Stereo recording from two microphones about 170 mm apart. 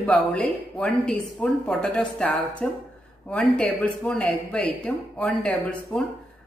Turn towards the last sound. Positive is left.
turn(degrees=5)  # may be behind; listen again after turning